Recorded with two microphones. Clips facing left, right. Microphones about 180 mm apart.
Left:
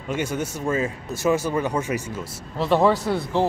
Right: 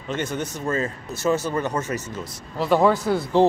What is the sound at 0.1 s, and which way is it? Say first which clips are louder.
Speech: left 1 dB; 10° left (ahead or behind).